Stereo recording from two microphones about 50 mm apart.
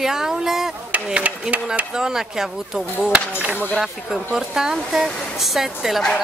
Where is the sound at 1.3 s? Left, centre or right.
Right.